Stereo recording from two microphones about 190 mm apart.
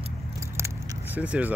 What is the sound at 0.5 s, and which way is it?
Biting, 10° right (ahead or behind).